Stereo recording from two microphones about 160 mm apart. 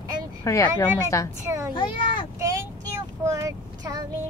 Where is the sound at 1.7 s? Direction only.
30° left (ahead or behind).